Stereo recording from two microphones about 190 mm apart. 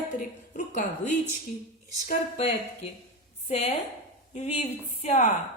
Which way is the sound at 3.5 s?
35° left (ahead or behind).